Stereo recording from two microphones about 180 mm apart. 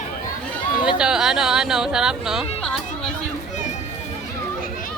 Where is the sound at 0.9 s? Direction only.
5° right (ahead or behind).